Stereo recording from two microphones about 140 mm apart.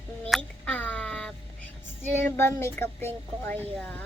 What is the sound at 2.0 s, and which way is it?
Speech, 15° left (ahead or behind).